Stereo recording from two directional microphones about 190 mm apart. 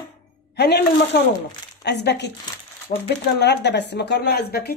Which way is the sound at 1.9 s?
65° left (ahead or behind).